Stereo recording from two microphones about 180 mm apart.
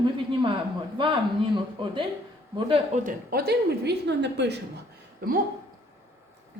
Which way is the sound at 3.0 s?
55° right (ahead or behind).